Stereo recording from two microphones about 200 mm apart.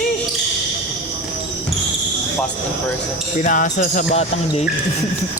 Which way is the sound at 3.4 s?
40° left (ahead or behind).